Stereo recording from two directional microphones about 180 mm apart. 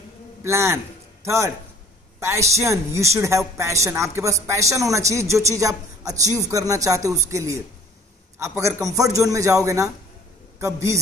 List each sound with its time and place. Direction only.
0.4 s a man's voice: 15° right (ahead or behind)